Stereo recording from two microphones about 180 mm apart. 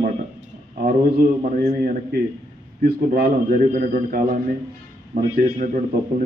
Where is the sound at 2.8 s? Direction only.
55° right (ahead or behind).